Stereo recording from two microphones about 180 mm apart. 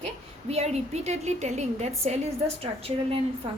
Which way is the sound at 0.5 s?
35° right (ahead or behind).